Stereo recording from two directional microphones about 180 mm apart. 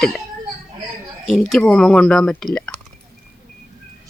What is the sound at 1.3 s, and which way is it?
Speech, centre (ahead or behind).